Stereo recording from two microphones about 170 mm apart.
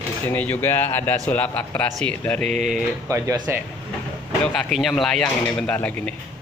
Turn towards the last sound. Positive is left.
turn(degrees=10)  # may be behind; listen again after turning